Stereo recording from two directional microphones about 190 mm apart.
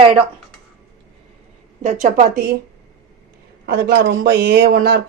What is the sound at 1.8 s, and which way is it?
Speech, 40° right (ahead or behind).